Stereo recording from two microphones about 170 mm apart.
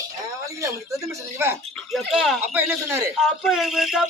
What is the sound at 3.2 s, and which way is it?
Speech, centre (ahead or behind).